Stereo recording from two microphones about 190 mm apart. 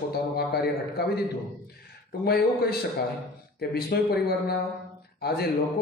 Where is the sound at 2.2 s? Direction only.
55° left (ahead or behind).